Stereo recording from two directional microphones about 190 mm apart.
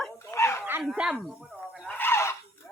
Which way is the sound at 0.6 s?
10° right (ahead or behind).